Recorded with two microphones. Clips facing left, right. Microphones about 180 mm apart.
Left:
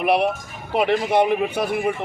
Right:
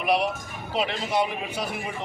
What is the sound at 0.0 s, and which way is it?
A man's voice, 60° left (ahead or behind).